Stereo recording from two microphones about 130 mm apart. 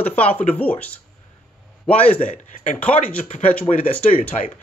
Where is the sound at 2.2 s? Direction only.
75° left (ahead or behind).